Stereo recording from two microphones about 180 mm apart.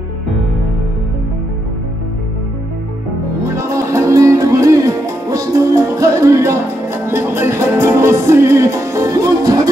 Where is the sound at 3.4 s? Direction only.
15° right (ahead or behind).